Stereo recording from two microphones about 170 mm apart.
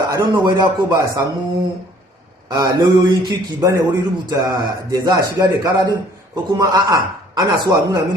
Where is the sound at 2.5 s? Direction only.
25° right (ahead or behind).